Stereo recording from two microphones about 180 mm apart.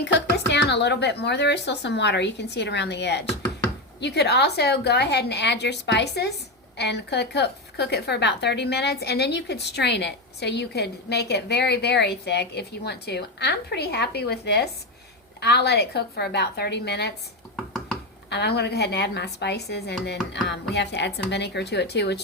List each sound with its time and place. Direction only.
0.0 s a woman's voice: 70° left (ahead or behind)
18.3 s a woman's voice: 70° left (ahead or behind)